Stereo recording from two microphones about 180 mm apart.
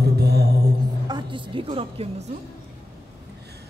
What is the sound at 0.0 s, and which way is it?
Music, 65° right (ahead or behind).